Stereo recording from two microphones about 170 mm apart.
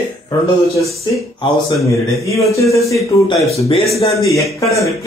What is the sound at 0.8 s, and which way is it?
Speech, centre (ahead or behind).